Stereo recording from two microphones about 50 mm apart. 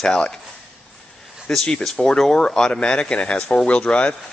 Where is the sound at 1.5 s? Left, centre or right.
Centre.